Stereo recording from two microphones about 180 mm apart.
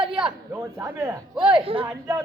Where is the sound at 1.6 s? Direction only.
30° right (ahead or behind).